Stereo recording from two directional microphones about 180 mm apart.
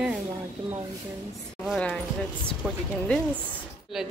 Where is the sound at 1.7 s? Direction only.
5° left (ahead or behind).